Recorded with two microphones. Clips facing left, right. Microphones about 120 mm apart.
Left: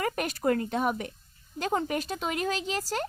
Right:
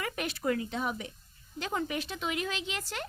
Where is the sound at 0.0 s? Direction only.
45° left (ahead or behind).